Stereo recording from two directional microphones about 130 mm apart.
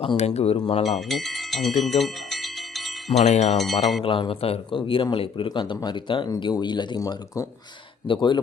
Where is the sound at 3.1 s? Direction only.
55° left (ahead or behind).